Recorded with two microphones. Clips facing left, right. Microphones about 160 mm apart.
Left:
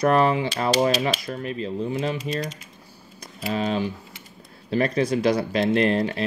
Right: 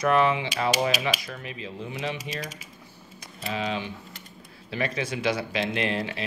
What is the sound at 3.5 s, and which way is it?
Speech, 40° left (ahead or behind).